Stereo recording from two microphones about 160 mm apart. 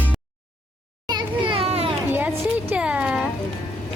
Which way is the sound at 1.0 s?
30° right (ahead or behind).